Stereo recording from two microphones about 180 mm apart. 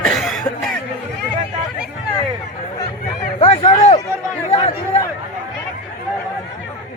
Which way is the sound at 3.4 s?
40° left (ahead or behind).